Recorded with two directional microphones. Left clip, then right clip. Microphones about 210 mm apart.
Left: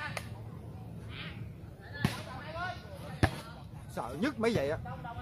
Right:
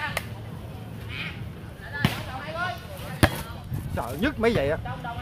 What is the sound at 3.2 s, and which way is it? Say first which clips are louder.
Basketball bounce: right 10 dB; 50° right (ahead or behind).